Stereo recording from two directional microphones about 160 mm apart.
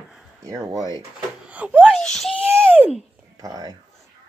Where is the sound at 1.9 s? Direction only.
5° left (ahead or behind).